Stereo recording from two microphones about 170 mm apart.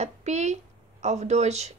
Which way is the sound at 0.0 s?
40° right (ahead or behind).